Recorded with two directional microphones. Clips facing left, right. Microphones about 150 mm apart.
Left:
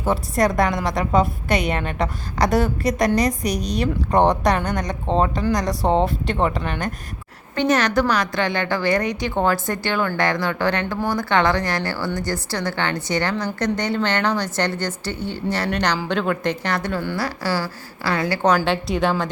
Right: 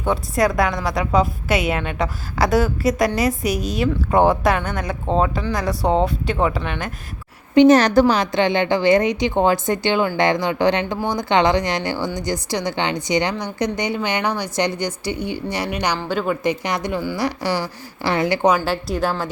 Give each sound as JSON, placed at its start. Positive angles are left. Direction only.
{"t": 0.0, "sound": "a woman's voice", "side_deg": 0}
{"t": 7.7, "sound": "a woman's voice", "side_deg": -35}
{"t": 18.4, "sound": "a woman's voice", "side_deg": -5}